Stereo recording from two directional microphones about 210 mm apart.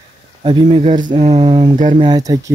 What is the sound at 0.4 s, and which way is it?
Speech, 25° right (ahead or behind).